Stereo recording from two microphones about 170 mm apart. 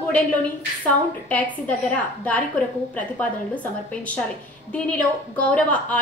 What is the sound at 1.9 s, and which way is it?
A woman's voice, 10° left (ahead or behind).